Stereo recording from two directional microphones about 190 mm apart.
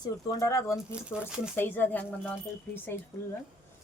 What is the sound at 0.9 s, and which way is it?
Speech, 5° right (ahead or behind).